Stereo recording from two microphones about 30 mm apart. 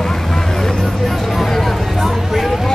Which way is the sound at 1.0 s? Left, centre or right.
Centre.